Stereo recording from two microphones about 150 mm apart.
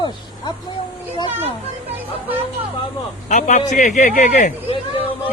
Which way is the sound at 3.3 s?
60° left (ahead or behind).